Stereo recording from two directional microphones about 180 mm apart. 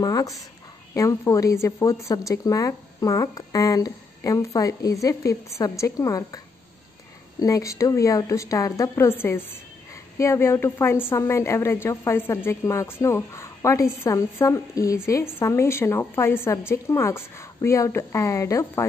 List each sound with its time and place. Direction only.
0.0 s a woman's voice: 20° left (ahead or behind)